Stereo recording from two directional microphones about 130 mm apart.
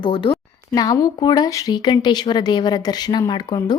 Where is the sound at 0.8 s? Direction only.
25° left (ahead or behind).